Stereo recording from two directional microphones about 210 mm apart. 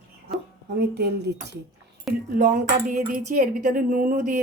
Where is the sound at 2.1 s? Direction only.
40° right (ahead or behind).